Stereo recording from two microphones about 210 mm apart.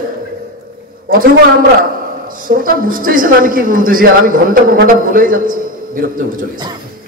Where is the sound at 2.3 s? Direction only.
40° right (ahead or behind).